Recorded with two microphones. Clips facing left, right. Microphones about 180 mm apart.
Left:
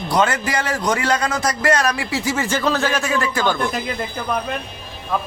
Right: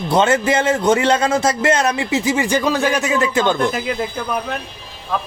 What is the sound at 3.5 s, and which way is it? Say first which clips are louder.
Speech: right 4 dB; centre (ahead or behind).